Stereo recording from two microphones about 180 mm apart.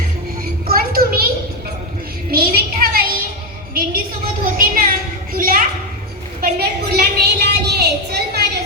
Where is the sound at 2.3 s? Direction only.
55° right (ahead or behind).